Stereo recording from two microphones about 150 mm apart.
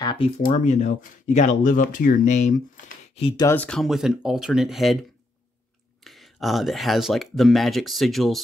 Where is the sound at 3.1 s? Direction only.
40° left (ahead or behind).